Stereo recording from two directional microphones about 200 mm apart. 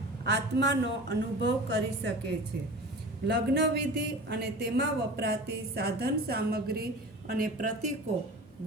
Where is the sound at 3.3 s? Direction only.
55° right (ahead or behind); by 7.9 s 40° right (ahead or behind).